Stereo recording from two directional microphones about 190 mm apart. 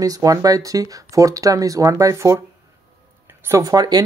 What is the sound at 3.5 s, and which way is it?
Speech, 15° right (ahead or behind).